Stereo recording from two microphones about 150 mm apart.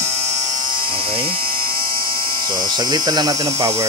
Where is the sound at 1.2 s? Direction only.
90° right.